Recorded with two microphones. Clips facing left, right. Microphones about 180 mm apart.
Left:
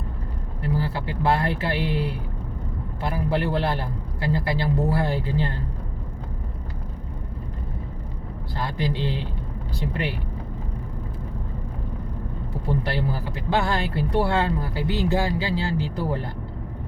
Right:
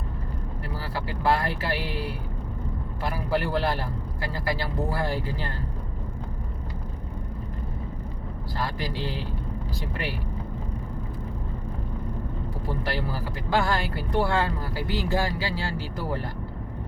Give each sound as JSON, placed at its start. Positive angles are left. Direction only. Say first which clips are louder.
{"t": 0.8, "sound": "speech", "louder": "left 4 dB", "side_deg": 20}
{"t": 8.5, "sound": "speech", "louder": "left 4 dB", "side_deg": 20}
{"t": 12.6, "sound": "speech", "louder": "left 5 dB", "side_deg": 20}